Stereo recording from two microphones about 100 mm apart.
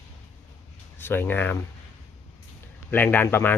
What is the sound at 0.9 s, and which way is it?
Speech, 20° left (ahead or behind).